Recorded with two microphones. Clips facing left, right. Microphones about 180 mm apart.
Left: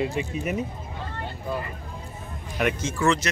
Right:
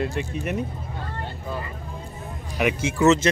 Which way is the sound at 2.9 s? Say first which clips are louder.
Right 7 dB; 20° right (ahead or behind).